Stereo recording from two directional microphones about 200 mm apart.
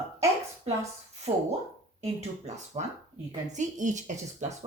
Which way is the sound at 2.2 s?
35° right (ahead or behind).